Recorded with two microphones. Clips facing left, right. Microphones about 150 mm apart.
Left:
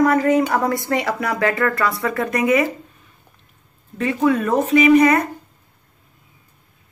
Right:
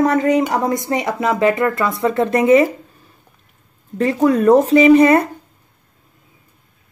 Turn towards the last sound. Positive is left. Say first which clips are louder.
# right 3 dB
turn(degrees=-30)  # may be behind; listen again after turning